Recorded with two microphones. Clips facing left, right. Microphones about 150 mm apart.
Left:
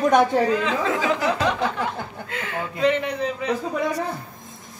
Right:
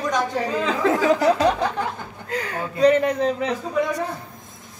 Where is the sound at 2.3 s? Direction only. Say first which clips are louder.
Right 3 dB; 40° right (ahead or behind).